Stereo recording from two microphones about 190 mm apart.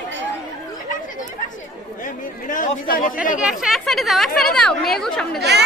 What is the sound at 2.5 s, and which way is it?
Speech, 45° left (ahead or behind).